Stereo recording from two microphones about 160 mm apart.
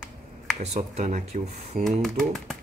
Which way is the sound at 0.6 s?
45° right (ahead or behind).